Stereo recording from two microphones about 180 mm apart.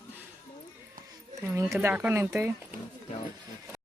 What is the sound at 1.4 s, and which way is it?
Speech, 15° right (ahead or behind).